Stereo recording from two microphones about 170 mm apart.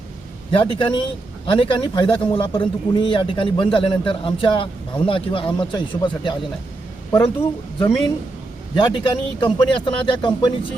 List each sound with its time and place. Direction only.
0.5 s a man's voice: 30° left (ahead or behind)
7.8 s a man's voice: 30° left (ahead or behind)